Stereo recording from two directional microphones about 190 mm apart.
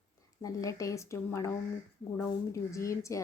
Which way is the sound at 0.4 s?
20° left (ahead or behind).